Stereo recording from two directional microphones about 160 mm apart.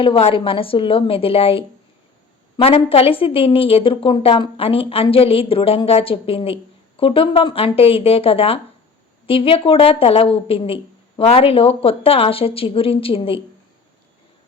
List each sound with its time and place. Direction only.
0.0 s a woman's voice: 35° left (ahead or behind)